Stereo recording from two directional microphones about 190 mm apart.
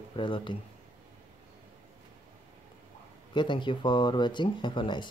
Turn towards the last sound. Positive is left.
turn(degrees=25)  # may be behind; listen again after turning